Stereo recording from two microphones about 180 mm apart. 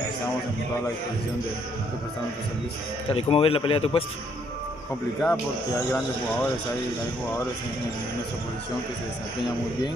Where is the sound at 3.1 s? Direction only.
30° left (ahead or behind).